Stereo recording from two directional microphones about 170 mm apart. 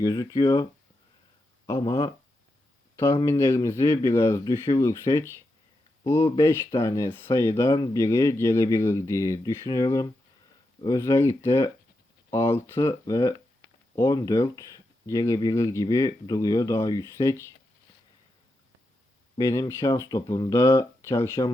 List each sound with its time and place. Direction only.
0.0 s speech: 25° left (ahead or behind)
3.2 s speech: 15° left (ahead or behind)
19.4 s speech: 20° left (ahead or behind)